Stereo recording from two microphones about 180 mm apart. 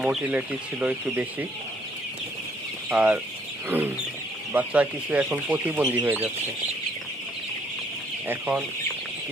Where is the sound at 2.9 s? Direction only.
10° right (ahead or behind).